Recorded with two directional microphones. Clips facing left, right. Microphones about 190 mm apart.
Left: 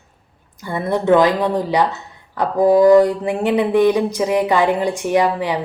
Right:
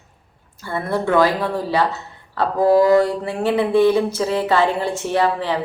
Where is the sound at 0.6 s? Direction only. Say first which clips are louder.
Left 3 dB; 20° left (ahead or behind).